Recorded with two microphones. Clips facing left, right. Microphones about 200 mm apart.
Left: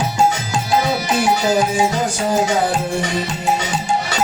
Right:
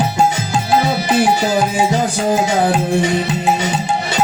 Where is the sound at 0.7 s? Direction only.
55° right (ahead or behind).